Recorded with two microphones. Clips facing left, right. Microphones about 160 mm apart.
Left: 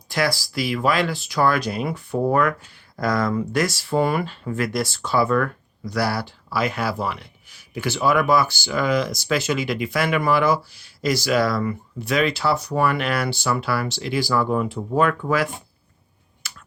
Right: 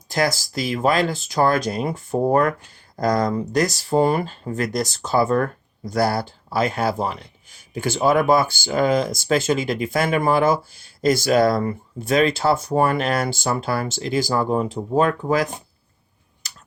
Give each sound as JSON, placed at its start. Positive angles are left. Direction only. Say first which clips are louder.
{"t": 0.1, "sound": "speech", "louder": "right 1 dB", "side_deg": -45}
{"t": 11.5, "sound": "speech", "louder": "right 2 dB", "side_deg": -30}
{"t": 11.9, "sound": "speech", "louder": "right 4 dB", "side_deg": -45}